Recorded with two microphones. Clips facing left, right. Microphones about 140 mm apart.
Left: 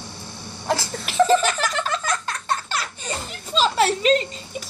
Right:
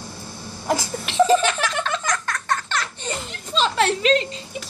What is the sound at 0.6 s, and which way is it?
Cough, 10° right (ahead or behind).